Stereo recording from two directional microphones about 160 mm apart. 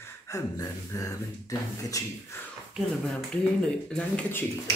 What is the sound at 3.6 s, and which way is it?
Speech, 5° left (ahead or behind).